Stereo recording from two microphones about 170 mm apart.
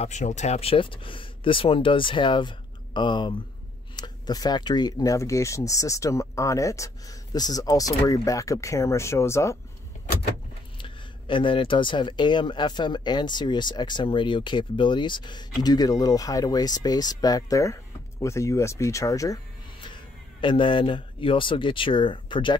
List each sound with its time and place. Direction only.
0.0 s speech: 45° left (ahead or behind); by 9.6 s 15° left (ahead or behind)
10.8 s speech: 30° left (ahead or behind)